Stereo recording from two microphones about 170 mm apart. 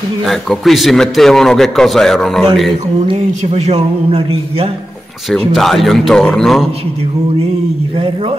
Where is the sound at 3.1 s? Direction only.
40° right (ahead or behind).